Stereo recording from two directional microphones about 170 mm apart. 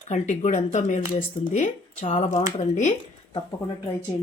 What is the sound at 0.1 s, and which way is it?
Speech, 45° left (ahead or behind).